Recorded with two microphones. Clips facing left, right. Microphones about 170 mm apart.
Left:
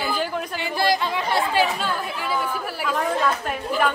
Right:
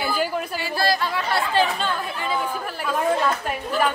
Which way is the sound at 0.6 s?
20° left (ahead or behind).